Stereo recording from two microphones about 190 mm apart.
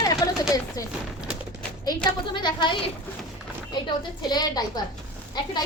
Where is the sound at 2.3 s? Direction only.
25° left (ahead or behind).